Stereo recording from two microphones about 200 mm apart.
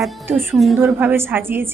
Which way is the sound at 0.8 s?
10° right (ahead or behind).